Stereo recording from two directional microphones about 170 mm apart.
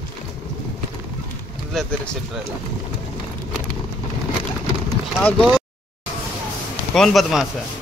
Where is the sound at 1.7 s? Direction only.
5° left (ahead or behind).